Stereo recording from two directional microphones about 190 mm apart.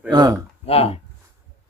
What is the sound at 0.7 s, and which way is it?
Speech, 30° left (ahead or behind).